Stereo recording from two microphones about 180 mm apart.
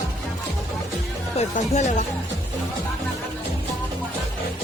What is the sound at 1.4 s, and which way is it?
Speech, 40° left (ahead or behind).